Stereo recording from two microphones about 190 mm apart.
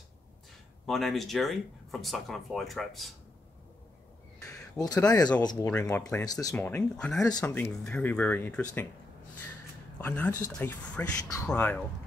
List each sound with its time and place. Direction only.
0.8 s speech: centre (ahead or behind)
4.5 s speech: 20° left (ahead or behind)
5.7 s speech: 10° left (ahead or behind)
6.5 s speech: 10° left (ahead or behind)
9.9 s speech: 10° left (ahead or behind)